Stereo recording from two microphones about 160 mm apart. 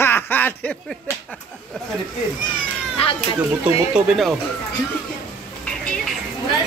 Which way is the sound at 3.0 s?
35° left (ahead or behind).